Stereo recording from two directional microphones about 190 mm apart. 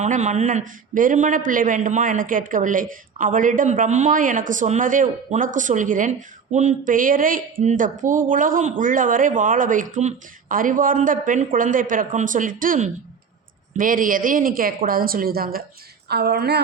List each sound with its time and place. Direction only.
0.0 s a man's voice: 40° right (ahead or behind); by 16.6 s 60° right (ahead or behind)